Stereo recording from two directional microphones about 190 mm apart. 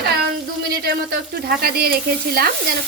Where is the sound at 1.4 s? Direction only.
55° right (ahead or behind).